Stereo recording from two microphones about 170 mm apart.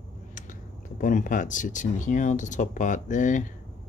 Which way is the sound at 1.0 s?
50° left (ahead or behind).